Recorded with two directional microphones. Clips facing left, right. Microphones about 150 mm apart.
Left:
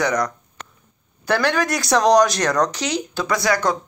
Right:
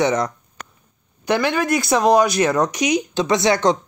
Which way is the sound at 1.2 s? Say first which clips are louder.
Right 1 dB; 10° right (ahead or behind).